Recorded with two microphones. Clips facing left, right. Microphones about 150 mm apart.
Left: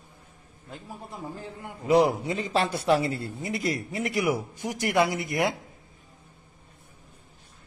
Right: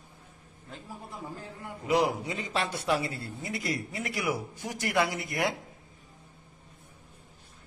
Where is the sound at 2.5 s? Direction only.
35° left (ahead or behind).